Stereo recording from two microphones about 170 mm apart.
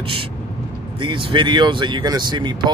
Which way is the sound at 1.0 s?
30° right (ahead or behind).